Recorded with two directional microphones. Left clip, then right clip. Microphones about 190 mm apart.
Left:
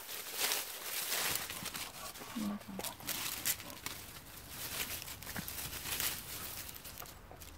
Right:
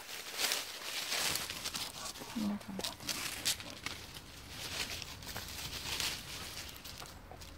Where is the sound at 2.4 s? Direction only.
20° left (ahead or behind); by 3.7 s 35° left (ahead or behind).